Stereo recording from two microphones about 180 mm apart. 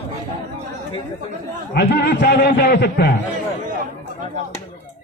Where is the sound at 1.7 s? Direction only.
65° left (ahead or behind).